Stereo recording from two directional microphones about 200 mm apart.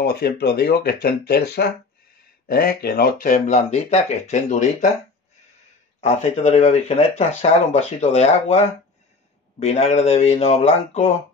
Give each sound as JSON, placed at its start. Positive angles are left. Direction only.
{"t": 0.0, "sound": "speech", "side_deg": 55}
{"t": 5.9, "sound": "speech", "side_deg": 30}